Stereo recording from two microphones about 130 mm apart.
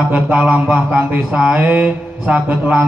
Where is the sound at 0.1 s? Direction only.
10° right (ahead or behind).